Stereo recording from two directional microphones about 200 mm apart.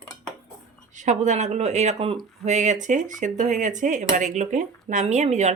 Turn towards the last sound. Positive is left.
turn(degrees=-35)  # may be behind; listen again after turning